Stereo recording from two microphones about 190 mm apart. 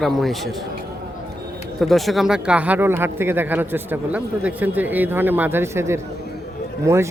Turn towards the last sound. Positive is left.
turn(degrees=-15)  # may be behind; listen again after turning